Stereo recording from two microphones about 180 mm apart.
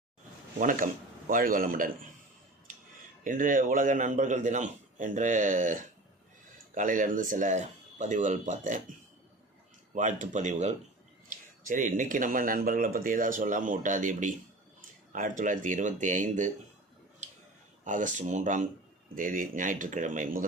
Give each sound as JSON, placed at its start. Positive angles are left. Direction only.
{"t": 0.6, "sound": "speech", "side_deg": -50}
{"t": 3.2, "sound": "speech", "side_deg": -45}
{"t": 9.9, "sound": "speech", "side_deg": -45}
{"t": 17.2, "sound": "a sound", "side_deg": -40}
{"t": 17.8, "sound": "speech", "side_deg": -45}